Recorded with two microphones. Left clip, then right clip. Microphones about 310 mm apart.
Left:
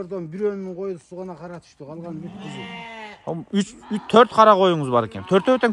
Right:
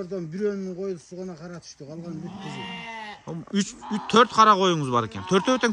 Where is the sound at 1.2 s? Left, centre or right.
Left.